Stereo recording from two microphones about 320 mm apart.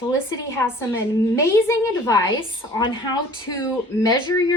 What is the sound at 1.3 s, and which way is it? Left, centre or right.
Speech, centre.